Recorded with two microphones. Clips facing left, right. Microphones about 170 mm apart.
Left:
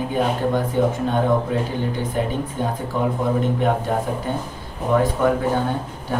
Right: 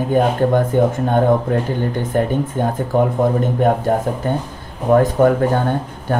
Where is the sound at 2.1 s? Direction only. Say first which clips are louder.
Right 6 dB; 50° right (ahead or behind).